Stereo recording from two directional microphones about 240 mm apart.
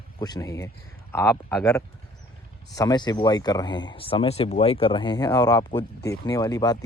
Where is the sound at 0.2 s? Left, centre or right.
Centre.